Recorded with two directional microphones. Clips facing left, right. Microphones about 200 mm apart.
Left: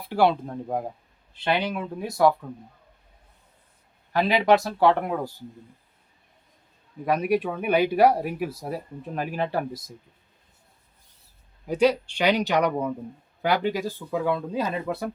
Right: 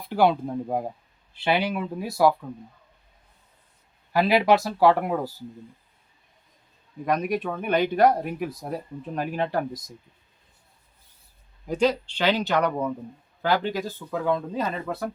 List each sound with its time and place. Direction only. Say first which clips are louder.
0.0 s speech: even; centre (ahead or behind)
4.1 s speech: even; 5° right (ahead or behind)
7.0 s speech: left 2 dB; 5° left (ahead or behind)
11.6 s speech: left 2 dB; 5° left (ahead or behind)